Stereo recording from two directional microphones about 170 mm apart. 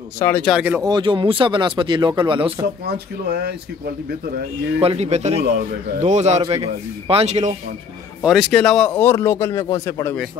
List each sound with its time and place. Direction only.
0.2 s speech: 10° left (ahead or behind)
0.6 s speech: 10° right (ahead or behind)
0.8 s speech: 25° right (ahead or behind)
3.3 s speech: 70° right (ahead or behind)
4.7 s a man's voice: 35° right (ahead or behind)
8.2 s speech: centre (ahead or behind); by 10.1 s 15° left (ahead or behind)